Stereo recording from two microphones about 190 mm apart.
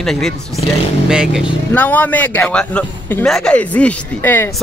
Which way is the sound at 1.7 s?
10° left (ahead or behind).